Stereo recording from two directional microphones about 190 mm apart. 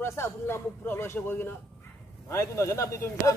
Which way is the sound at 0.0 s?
15° left (ahead or behind).